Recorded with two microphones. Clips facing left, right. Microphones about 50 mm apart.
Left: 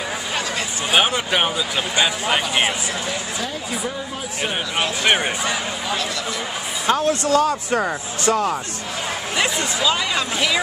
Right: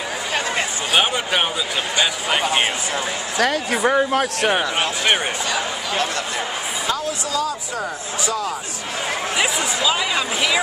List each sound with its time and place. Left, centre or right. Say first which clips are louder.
0.9 s speech: left 1 dB; centre
3.3 s speech: right 7 dB; right
5.0 s speech: left 2 dB; centre
6.9 s speech: left 8 dB; left
9.8 s speech: even; centre